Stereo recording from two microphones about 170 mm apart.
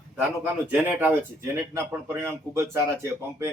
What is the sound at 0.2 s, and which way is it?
Speech, 10° right (ahead or behind).